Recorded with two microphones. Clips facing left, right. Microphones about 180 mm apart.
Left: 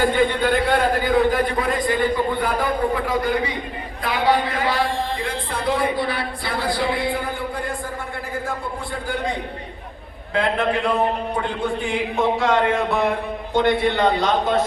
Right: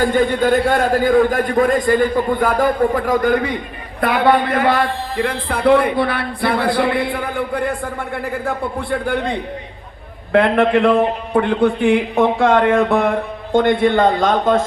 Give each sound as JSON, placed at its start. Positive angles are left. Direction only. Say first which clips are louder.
{"t": 0.0, "sound": "a man's voice", "louder": "right 3 dB", "side_deg": -45}
{"t": 10.3, "sound": "a man's voice", "louder": "right 8 dB", "side_deg": -60}